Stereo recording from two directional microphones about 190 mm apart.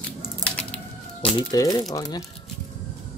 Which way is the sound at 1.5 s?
20° left (ahead or behind).